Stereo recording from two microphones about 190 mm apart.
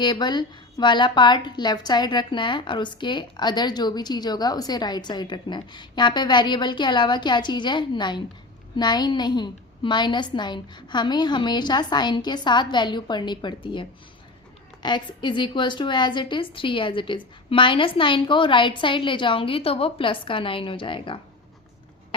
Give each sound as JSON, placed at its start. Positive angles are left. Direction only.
{"t": 0.0, "sound": "a woman's voice", "side_deg": 25}